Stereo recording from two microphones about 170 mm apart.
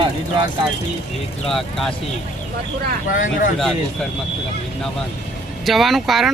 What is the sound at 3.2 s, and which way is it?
Speech, 55° left (ahead or behind).